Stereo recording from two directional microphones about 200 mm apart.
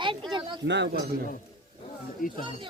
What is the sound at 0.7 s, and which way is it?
Speech, 60° right (ahead or behind).